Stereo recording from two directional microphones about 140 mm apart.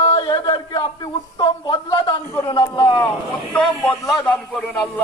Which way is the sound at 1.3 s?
30° left (ahead or behind).